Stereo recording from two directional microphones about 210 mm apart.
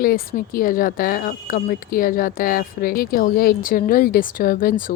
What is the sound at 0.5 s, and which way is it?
Speech, 40° left (ahead or behind).